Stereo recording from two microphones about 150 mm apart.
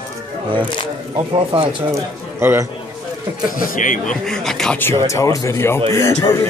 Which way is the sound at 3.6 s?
65° left (ahead or behind).